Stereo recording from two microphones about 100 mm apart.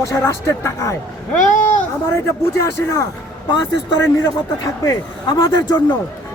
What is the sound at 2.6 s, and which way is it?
Speech, 35° left (ahead or behind).